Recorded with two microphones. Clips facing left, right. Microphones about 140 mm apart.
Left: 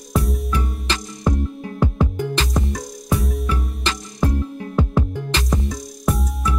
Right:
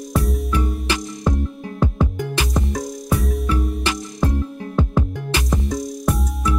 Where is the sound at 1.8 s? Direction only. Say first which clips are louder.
Even; 15° left (ahead or behind).